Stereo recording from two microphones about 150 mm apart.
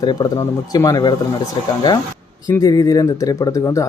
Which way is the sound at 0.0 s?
30° left (ahead or behind).